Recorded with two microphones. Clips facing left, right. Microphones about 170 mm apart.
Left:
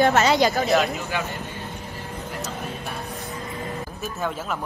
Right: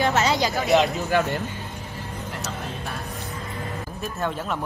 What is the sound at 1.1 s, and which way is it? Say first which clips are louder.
Speech: right 9 dB; 50° right (ahead or behind).